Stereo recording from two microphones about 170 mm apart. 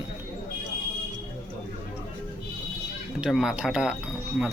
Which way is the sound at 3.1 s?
5° right (ahead or behind).